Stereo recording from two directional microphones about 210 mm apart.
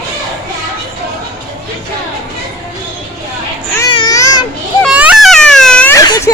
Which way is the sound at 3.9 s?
20° left (ahead or behind).